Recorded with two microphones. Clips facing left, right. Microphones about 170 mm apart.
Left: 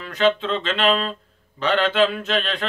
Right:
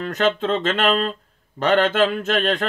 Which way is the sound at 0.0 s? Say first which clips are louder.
Even; 45° right (ahead or behind).